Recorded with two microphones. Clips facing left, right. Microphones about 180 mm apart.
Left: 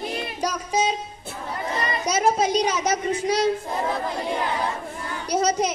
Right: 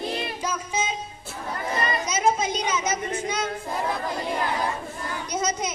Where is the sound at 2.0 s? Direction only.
35° left (ahead or behind).